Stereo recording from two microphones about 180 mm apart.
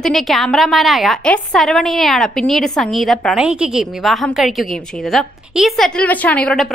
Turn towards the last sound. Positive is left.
turn(degrees=5)  # may be behind; listen again after turning